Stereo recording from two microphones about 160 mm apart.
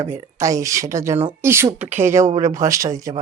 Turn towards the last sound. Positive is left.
turn(degrees=-20)  # may be behind; listen again after turning